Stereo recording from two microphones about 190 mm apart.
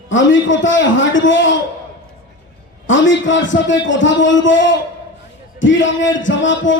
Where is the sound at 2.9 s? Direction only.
80° left.